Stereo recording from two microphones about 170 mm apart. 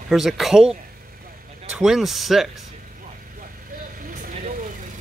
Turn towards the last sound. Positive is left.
turn(degrees=-50)  # may be behind; listen again after turning